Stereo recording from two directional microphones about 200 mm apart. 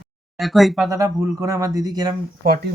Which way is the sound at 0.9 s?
15° right (ahead or behind).